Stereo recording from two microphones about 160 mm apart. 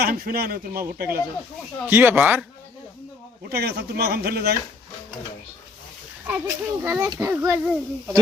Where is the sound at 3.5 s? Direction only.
80° right.